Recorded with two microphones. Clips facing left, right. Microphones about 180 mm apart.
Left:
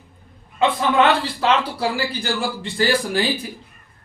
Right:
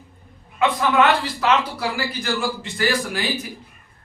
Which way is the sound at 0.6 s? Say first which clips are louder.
Left 1 dB; 30° left (ahead or behind).